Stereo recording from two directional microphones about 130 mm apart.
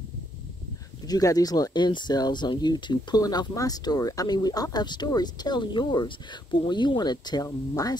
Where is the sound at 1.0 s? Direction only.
30° left (ahead or behind).